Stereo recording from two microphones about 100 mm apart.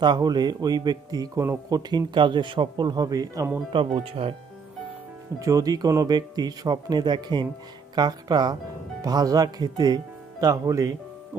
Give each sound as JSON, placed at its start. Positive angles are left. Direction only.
{"t": 0.0, "sound": "a man's voice", "side_deg": -45}
{"t": 3.7, "sound": "speech", "side_deg": -60}
{"t": 5.4, "sound": "a man's voice", "side_deg": -35}
{"t": 10.4, "sound": "speech", "side_deg": -35}